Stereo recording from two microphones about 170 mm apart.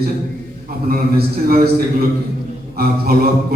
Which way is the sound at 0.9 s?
60° right (ahead or behind).